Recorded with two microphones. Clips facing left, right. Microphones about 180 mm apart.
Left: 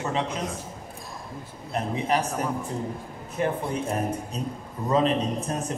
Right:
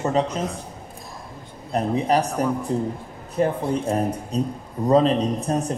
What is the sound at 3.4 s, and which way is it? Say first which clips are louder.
Speech: right 5 dB; 35° right (ahead or behind).